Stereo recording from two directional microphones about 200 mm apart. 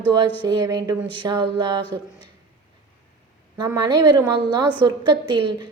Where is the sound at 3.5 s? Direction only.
20° right (ahead or behind).